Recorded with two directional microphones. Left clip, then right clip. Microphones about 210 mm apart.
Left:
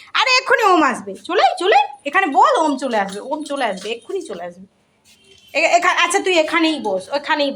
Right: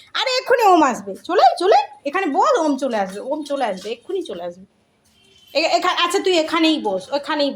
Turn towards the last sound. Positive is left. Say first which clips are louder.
# left 2 dB
turn(degrees=-15)  # may be behind; listen again after turning